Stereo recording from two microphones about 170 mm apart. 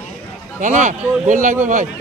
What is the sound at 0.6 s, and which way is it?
Speech, 45° right (ahead or behind).